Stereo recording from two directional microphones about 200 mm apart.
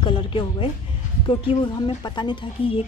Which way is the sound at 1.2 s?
25° left (ahead or behind).